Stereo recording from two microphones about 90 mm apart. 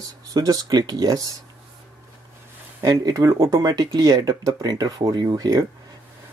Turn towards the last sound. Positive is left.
turn(degrees=-50)  # may be behind; listen again after turning